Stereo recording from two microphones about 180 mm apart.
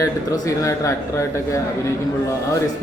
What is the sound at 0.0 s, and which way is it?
A man's voice, 20° left (ahead or behind).